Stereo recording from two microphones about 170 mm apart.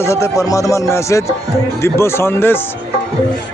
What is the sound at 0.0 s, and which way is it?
Speech, 15° left (ahead or behind).